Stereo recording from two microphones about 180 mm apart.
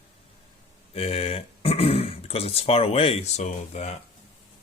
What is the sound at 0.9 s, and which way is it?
Speech, 35° left (ahead or behind).